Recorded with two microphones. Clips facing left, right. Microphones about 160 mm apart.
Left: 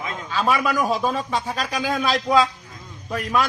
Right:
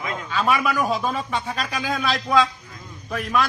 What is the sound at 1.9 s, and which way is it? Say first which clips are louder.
Speech: left 3 dB; 15° left (ahead or behind).